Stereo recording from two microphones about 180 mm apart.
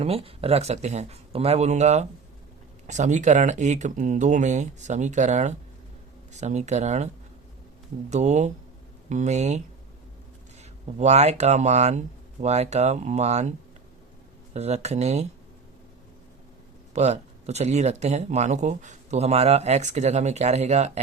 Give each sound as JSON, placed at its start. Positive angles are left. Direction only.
{"t": 0.0, "sound": "speech", "side_deg": -35}
{"t": 8.1, "sound": "speech", "side_deg": -40}
{"t": 10.9, "sound": "speech", "side_deg": -40}
{"t": 14.5, "sound": "speech", "side_deg": -35}
{"t": 16.9, "sound": "speech", "side_deg": -35}